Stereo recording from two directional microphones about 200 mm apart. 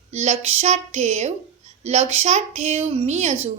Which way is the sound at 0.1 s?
35° right (ahead or behind).